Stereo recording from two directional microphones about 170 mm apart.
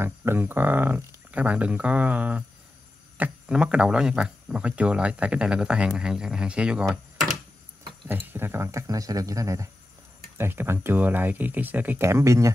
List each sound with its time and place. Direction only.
0.0 s speech: 15° right (ahead or behind)
8.3 s speech: 15° right (ahead or behind)